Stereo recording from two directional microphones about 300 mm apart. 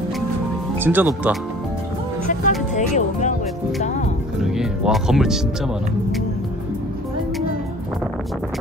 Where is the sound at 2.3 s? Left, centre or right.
Left.